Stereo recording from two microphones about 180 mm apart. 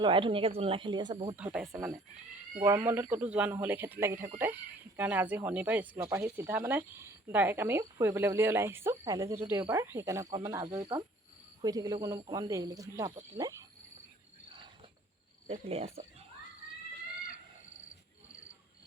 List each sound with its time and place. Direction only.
0.0 s speech: 30° right (ahead or behind)
1.7 s speech: 10° right (ahead or behind)
15.4 s cricket: 35° right (ahead or behind)